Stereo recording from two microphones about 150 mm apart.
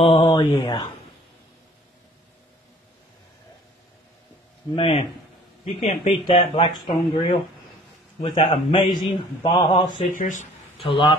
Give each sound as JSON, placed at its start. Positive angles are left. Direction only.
{"t": 0.0, "sound": "speech", "side_deg": 40}
{"t": 0.3, "sound": "mantra", "side_deg": 25}
{"t": 4.7, "sound": "speech", "side_deg": 40}
{"t": 8.9, "sound": "speech", "side_deg": 25}
{"t": 9.8, "sound": "speech", "side_deg": 60}